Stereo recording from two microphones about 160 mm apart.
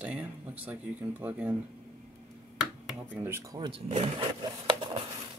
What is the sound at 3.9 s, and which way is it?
Speech, 35° right (ahead or behind).